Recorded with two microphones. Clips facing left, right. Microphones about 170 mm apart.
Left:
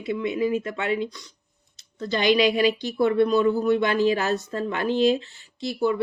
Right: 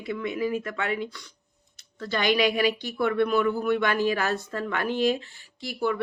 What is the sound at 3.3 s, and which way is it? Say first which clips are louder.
Speech: left 4 dB; 25° left (ahead or behind).